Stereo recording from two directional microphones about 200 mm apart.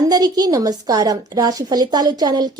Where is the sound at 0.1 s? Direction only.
20° right (ahead or behind).